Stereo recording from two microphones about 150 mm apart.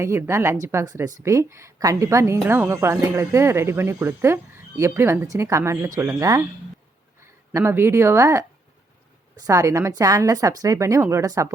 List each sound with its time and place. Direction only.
0.0 s a woman's voice: 15° right (ahead or behind)